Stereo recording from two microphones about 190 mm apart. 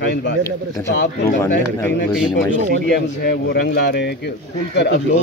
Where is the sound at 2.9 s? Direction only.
60° left (ahead or behind).